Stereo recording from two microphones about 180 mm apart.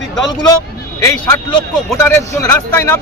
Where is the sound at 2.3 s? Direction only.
15° left (ahead or behind).